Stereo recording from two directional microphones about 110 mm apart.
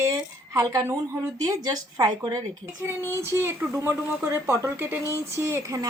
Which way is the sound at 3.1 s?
25° right (ahead or behind).